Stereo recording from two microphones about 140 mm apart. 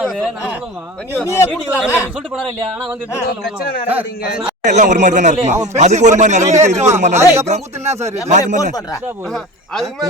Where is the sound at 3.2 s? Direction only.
90° left.